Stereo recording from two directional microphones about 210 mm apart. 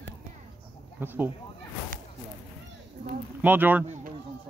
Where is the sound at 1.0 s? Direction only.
10° right (ahead or behind).